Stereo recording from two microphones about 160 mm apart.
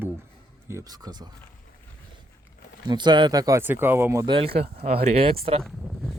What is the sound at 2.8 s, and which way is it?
Speech, 25° right (ahead or behind).